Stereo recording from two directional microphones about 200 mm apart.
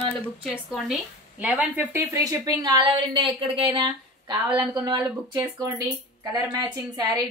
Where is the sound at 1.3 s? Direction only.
5° right (ahead or behind).